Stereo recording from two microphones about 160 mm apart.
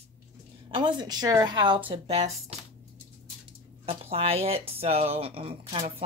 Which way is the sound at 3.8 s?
40° right (ahead or behind).